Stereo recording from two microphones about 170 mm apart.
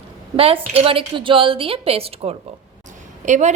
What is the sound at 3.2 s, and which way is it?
Speech, 45° right (ahead or behind).